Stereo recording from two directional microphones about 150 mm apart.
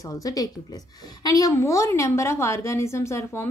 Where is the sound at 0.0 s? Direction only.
25° left (ahead or behind).